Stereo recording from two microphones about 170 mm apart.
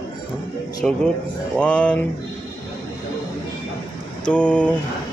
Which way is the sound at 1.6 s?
5° left (ahead or behind).